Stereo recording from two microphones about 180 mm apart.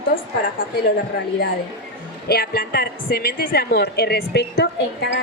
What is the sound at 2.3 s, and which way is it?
A woman's voice, 55° left (ahead or behind).